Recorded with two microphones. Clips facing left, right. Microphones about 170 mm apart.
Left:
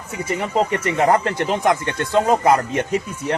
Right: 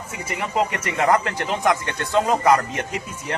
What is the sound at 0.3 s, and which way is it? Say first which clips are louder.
Speech: left 3 dB; 35° left (ahead or behind).